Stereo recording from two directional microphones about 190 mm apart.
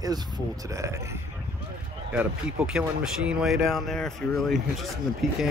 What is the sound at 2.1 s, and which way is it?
Speech, 5° right (ahead or behind).